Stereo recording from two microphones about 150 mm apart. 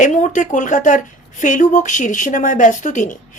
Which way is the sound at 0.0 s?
55° left (ahead or behind).